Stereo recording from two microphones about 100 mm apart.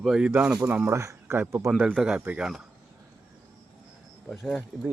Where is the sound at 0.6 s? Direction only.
15° right (ahead or behind).